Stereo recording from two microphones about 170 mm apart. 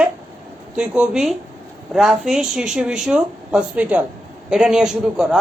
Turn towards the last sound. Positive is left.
turn(degrees=-5)  # may be behind; listen again after turning